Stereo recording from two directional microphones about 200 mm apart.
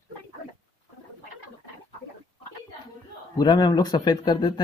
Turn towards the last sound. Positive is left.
turn(degrees=20)  # may be behind; listen again after turning